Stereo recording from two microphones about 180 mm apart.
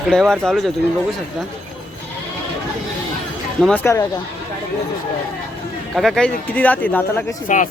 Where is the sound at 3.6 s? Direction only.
5° left (ahead or behind).